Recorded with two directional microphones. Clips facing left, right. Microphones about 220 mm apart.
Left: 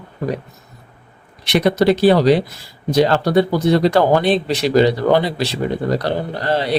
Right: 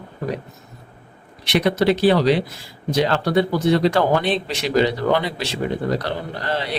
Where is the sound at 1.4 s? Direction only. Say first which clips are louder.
Left 3 dB; 40° left (ahead or behind).